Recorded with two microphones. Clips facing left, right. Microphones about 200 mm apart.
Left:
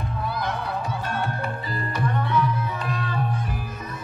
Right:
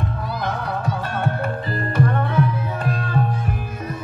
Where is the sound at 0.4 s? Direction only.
55° right (ahead or behind).